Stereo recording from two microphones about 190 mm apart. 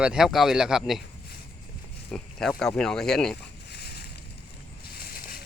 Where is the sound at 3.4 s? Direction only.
60° left (ahead or behind).